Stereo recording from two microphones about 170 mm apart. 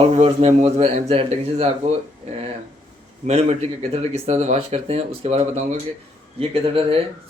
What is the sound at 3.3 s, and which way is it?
Speech, 40° right (ahead or behind).